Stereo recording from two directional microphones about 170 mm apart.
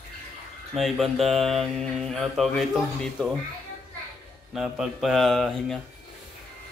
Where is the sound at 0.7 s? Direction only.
Centre (ahead or behind).